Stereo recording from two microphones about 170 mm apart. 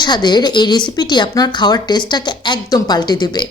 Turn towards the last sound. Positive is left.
turn(degrees=25)  # may be behind; listen again after turning